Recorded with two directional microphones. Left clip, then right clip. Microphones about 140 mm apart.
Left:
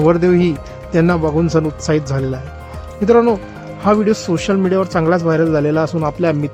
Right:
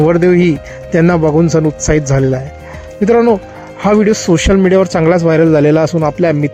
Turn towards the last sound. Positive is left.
turn(degrees=-20)  # may be behind; listen again after turning